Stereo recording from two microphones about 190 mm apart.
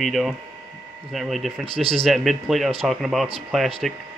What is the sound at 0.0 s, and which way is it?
Speech, centre (ahead or behind).